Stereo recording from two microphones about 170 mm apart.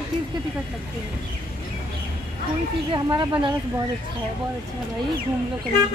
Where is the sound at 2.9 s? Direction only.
25° right (ahead or behind).